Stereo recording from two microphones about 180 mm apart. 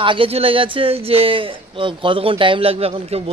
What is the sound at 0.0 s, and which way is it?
A man's voice, 30° right (ahead or behind).